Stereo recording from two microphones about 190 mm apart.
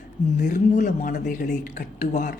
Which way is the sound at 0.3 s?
40° left (ahead or behind).